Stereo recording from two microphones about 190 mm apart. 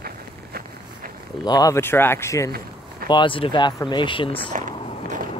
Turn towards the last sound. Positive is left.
turn(degrees=-45)  # may be behind; listen again after turning